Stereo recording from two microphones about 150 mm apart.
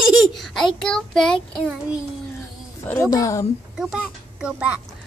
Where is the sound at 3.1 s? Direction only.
20° left (ahead or behind).